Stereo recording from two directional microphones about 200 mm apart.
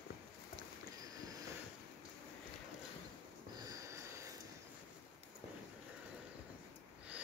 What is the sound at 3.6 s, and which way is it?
Sniff, 15° right (ahead or behind).